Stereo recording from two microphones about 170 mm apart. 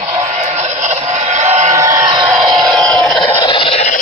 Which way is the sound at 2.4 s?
Centre (ahead or behind).